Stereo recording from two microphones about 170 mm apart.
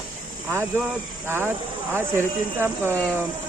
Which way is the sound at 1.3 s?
15° right (ahead or behind).